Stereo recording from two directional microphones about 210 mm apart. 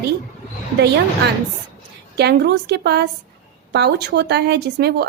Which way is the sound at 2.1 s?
50° right (ahead or behind).